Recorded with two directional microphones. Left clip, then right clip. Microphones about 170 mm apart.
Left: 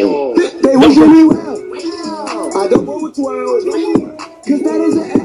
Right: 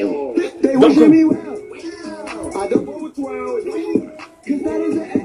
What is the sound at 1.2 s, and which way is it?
Music, 20° left (ahead or behind).